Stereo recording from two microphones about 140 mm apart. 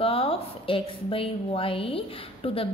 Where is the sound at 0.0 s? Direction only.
40° left (ahead or behind).